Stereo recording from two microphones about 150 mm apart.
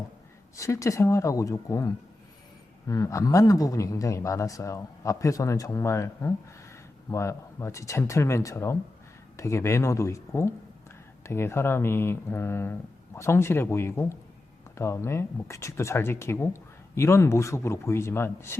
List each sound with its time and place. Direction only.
0.5 s a man's voice: 20° left (ahead or behind)